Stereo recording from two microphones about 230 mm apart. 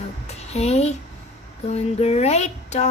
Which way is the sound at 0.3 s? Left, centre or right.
Left.